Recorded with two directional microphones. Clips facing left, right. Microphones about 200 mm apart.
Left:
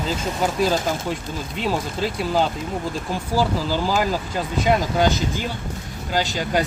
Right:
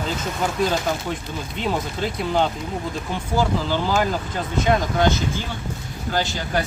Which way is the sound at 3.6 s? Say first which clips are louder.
Even; 5° left (ahead or behind).